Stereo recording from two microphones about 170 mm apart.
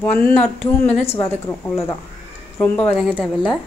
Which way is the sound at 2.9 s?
10° right (ahead or behind).